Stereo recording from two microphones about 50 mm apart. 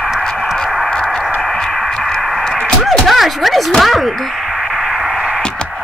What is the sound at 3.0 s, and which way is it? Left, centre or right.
Speech, centre.